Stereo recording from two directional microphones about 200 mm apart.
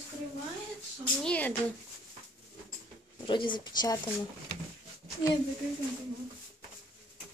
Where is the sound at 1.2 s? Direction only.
5° left (ahead or behind).